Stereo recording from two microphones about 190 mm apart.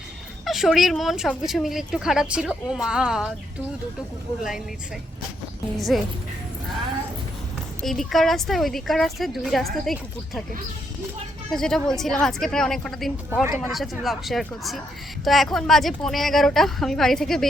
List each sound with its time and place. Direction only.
0.4 s speech: centre (ahead or behind)
5.7 s speech: centre (ahead or behind)
7.8 s speech: centre (ahead or behind)
11.5 s speech: 5° left (ahead or behind)